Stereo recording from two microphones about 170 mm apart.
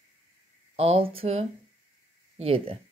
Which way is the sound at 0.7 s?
35° right (ahead or behind).